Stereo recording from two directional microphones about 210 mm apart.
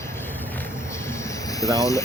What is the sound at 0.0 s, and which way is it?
Vehicle, 10° left (ahead or behind).